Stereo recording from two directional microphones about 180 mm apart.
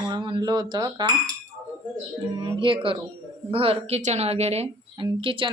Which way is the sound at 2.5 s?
30° right (ahead or behind).